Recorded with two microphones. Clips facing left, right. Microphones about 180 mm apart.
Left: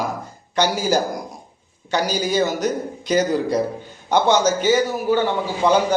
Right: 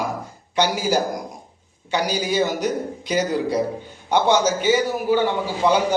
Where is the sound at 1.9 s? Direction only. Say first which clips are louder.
Left 1 dB; 40° left (ahead or behind).